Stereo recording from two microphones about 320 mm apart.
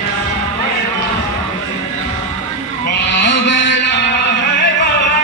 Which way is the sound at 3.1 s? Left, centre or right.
Left.